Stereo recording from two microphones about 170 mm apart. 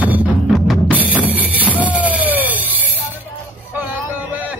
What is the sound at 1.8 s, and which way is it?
Music, 10° right (ahead or behind).